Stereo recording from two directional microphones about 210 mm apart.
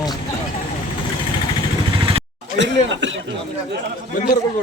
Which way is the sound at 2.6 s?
60° right (ahead or behind).